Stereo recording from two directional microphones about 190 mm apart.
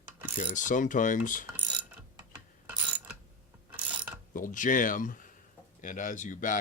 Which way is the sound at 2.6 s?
10° right (ahead or behind).